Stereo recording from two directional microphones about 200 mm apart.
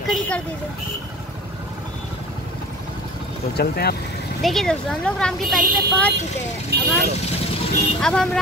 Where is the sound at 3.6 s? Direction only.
50° left (ahead or behind).